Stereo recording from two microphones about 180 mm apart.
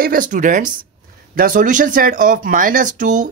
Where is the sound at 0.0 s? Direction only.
50° right (ahead or behind).